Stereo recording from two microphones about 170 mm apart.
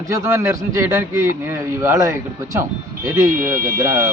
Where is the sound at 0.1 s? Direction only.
15° right (ahead or behind).